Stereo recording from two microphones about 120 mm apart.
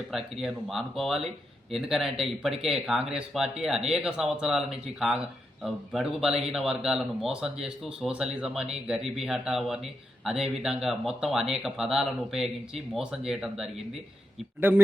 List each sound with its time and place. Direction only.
0.1 s speech: centre (ahead or behind)
14.7 s speech: 20° right (ahead or behind)